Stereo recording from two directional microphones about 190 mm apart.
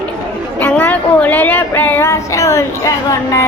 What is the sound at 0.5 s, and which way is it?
Female singing, 10° left (ahead or behind).